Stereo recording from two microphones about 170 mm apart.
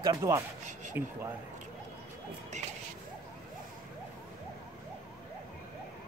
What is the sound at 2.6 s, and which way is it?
Speech, 45° right (ahead or behind).